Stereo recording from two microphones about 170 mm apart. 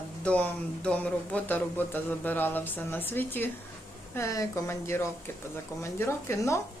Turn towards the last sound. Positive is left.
turn(degrees=15)  # may be behind; listen again after turning